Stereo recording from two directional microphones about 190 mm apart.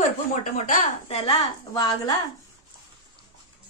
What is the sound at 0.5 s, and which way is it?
A woman's voice, 40° left (ahead or behind).